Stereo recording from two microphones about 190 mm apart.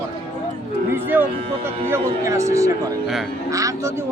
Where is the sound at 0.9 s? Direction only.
10° right (ahead or behind).